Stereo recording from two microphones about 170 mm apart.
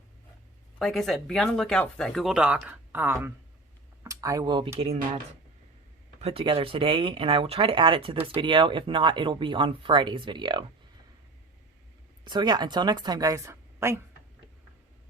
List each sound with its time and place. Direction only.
0.8 s speech: centre (ahead or behind); by 4.7 s 25° right (ahead or behind)
6.1 s speech: 35° right (ahead or behind)
12.2 s speech: 25° right (ahead or behind)